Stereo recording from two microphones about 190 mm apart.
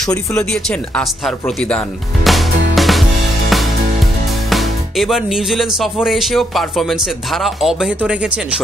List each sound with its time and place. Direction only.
0.4 s speech: 5° left (ahead or behind)
2.3 s music: centre (ahead or behind)
4.5 s speech: centre (ahead or behind)